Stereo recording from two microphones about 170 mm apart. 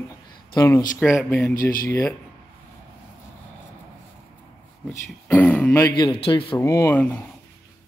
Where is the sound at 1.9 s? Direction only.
15° left (ahead or behind).